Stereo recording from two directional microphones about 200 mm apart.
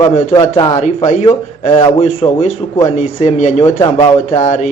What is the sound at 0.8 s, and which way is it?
A man's voice, 35° left (ahead or behind).